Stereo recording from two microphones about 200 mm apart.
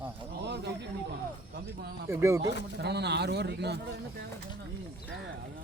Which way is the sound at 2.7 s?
55° right (ahead or behind).